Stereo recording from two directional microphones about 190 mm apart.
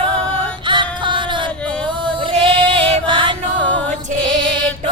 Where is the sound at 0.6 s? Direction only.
25° right (ahead or behind).